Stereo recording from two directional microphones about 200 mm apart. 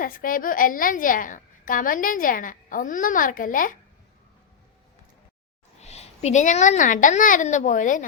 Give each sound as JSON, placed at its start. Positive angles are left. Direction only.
{"t": 0.0, "sound": "a woman's voice", "side_deg": 45}
{"t": 5.8, "sound": "a woman's voice", "side_deg": 35}